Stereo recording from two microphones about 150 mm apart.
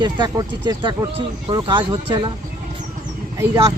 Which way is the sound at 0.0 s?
30° right (ahead or behind).